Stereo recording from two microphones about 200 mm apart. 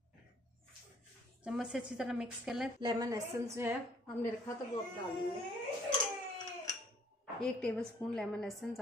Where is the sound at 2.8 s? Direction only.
20° right (ahead or behind).